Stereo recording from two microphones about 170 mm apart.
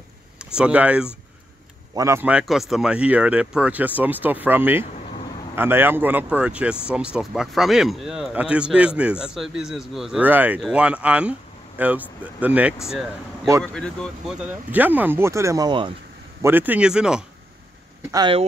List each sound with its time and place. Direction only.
0.4 s speech: 5° right (ahead or behind)
13.7 s speech: 5° left (ahead or behind); by 15.9 s 25° right (ahead or behind)
16.4 s speech: 10° right (ahead or behind)
18.1 s speech: 25° right (ahead or behind)